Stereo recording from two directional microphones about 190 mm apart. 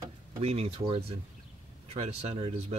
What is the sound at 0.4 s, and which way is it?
Speech, 30° right (ahead or behind).